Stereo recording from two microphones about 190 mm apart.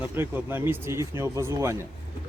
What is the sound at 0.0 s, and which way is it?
Speech, 10° right (ahead or behind).